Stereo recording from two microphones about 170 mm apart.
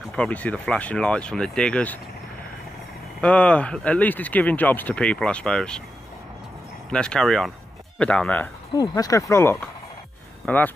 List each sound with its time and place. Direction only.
0.1 s speech: 5° left (ahead or behind)
3.2 s speech: 5° left (ahead or behind)
6.9 s speech: 5° left (ahead or behind)
8.7 s speech: 20° left (ahead or behind)